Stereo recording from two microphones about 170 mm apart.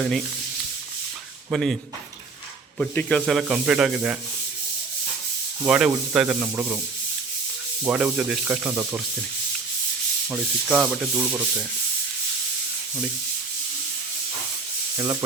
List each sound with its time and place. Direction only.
1.5 s rub: centre (ahead or behind)
5.6 s rub: 5° right (ahead or behind)
7.9 s sanding: 5° right (ahead or behind)
10.2 s sanding: 5° right (ahead or behind)
14.9 s rub: 20° right (ahead or behind)